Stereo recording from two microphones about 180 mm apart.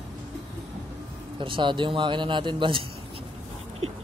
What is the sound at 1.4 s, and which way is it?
Speech, 25° right (ahead or behind).